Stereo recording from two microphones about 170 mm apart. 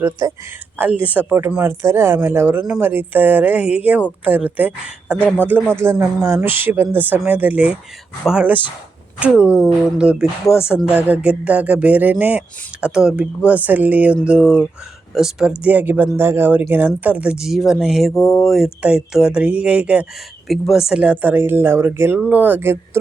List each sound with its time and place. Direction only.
0.0 s speech: 15° right (ahead or behind); by 18.1 s centre (ahead or behind)
18.1 s speech: 20° left (ahead or behind)
18.3 s speech: centre (ahead or behind)